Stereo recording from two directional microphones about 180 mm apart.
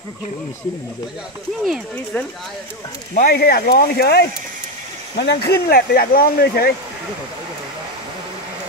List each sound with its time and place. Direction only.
1.6 s speech: centre (ahead or behind)
3.2 s speech: 60° left (ahead or behind)